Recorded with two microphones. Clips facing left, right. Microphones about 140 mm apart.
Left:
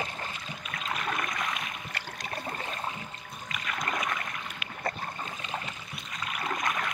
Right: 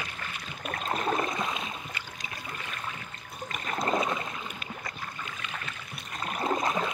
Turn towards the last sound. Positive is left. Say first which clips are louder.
# right 4 dB
turn(degrees=-25)  # may be behind; listen again after turning